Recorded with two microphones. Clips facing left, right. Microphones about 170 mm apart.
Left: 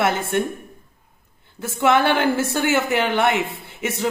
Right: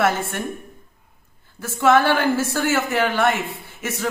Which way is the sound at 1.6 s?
15° left (ahead or behind).